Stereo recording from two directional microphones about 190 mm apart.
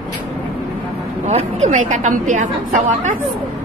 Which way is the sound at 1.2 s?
35° right (ahead or behind).